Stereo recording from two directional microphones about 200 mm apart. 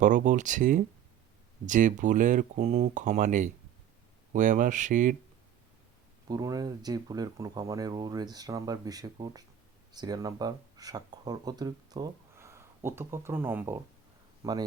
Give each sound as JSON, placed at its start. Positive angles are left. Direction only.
{"t": 0.0, "sound": "speech", "side_deg": -40}
{"t": 6.2, "sound": "speech", "side_deg": -20}